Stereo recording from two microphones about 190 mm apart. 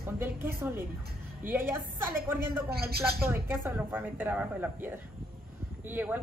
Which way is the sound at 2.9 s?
55° right (ahead or behind).